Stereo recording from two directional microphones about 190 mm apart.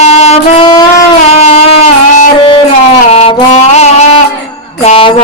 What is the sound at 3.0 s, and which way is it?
Music, 30° left (ahead or behind).